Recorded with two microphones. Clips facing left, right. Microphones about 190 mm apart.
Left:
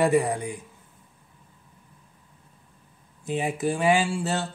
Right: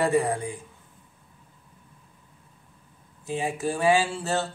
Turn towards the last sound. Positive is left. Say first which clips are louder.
# even
turn(degrees=15)  # may be behind; listen again after turning